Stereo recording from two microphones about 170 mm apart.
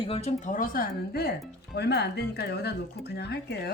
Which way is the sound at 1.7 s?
75° left (ahead or behind).